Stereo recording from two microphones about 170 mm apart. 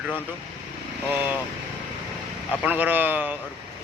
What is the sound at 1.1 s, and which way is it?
Speech, 10° right (ahead or behind).